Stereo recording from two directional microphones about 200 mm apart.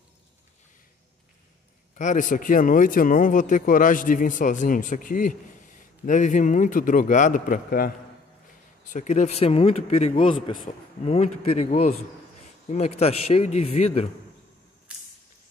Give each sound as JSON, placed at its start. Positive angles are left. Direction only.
{"t": 2.0, "sound": "a man's voice", "side_deg": 40}